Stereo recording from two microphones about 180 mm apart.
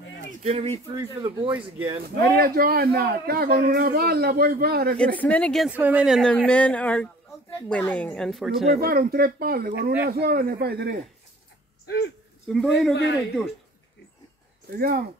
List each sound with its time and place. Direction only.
0.4 s speech: 30° right (ahead or behind)
1.5 s speech: 10° right (ahead or behind)
2.0 s a man's voice: 60° right (ahead or behind)
4.9 s a woman's voice: 5° left (ahead or behind)
5.7 s a woman's voice: 10° right (ahead or behind)
8.7 s a man's voice: 55° right (ahead or behind)
12.4 s a woman's voice: centre (ahead or behind)
14.7 s a man's voice: 55° right (ahead or behind)